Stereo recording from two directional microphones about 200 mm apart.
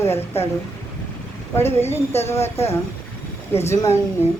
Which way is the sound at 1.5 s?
10° left (ahead or behind).